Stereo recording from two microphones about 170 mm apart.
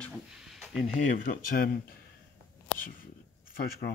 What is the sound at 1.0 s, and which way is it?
Speech, 50° left (ahead or behind).